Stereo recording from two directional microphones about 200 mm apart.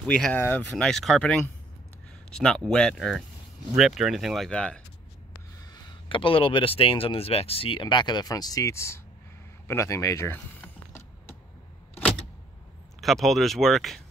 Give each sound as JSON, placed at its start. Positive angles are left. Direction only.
{"t": 0.0, "sound": "speech", "side_deg": 5}
{"t": 5.6, "sound": "speech", "side_deg": 20}
{"t": 9.7, "sound": "typing", "side_deg": 15}
{"t": 13.0, "sound": "speech", "side_deg": 0}